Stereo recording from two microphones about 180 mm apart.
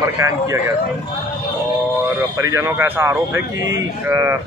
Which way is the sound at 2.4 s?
15° right (ahead or behind).